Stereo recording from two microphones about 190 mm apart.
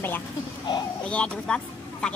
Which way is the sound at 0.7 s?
25° left (ahead or behind).